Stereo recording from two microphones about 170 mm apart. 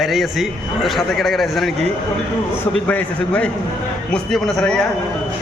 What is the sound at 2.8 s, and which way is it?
A man's voice, 10° left (ahead or behind).